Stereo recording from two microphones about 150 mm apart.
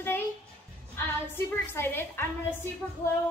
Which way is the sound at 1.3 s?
15° left (ahead or behind).